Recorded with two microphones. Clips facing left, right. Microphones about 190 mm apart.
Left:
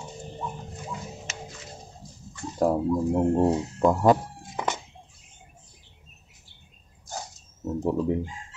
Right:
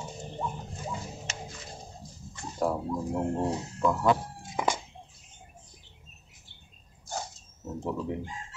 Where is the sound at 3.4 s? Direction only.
45° left (ahead or behind).